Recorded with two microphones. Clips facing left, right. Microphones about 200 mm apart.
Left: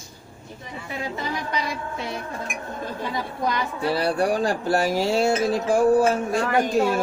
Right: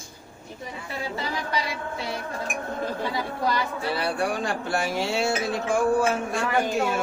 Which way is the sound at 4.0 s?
35° left (ahead or behind).